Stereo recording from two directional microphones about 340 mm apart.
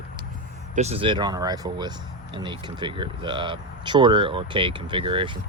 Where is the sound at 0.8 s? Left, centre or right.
Centre.